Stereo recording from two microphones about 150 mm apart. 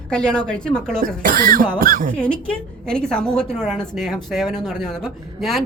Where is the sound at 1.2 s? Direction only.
70° right (ahead or behind).